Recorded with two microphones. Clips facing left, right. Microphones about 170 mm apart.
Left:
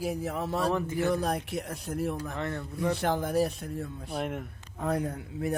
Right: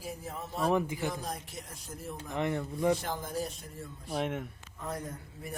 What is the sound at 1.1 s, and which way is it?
Speech, 65° left (ahead or behind).